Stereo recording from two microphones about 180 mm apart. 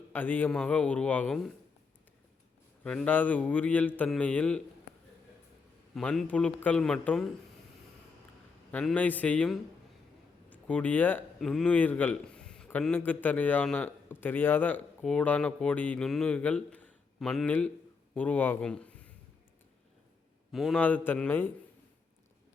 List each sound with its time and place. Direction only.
0.1 s a man's voice: 10° left (ahead or behind)
2.8 s a man's voice: 5° left (ahead or behind)
5.9 s a man's voice: 5° left (ahead or behind)
8.7 s a man's voice: 5° left (ahead or behind)
16.7 s a sound: 5° left (ahead or behind)
18.1 s a man's voice: 10° left (ahead or behind)
20.5 s a man's voice: centre (ahead or behind)